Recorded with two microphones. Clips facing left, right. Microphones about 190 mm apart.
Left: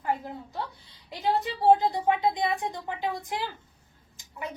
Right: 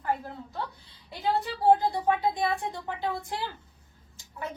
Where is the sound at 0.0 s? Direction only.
15° left (ahead or behind).